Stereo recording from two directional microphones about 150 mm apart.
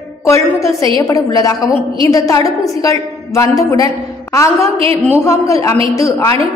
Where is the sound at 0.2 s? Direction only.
20° left (ahead or behind).